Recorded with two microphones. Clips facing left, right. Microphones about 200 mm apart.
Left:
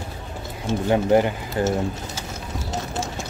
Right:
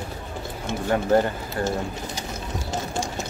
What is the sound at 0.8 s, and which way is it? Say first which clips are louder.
Speech: left 2 dB; 10° left (ahead or behind).